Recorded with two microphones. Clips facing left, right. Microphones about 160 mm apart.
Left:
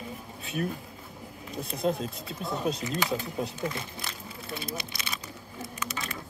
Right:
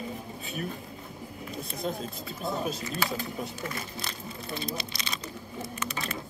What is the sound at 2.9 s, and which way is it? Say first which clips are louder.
Speech: left 2 dB; 15° left (ahead or behind).